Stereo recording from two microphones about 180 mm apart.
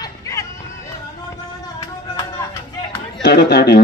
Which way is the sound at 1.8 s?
20° left (ahead or behind).